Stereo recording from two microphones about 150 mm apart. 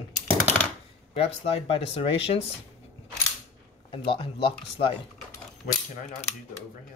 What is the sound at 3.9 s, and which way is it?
Speech, 35° left (ahead or behind).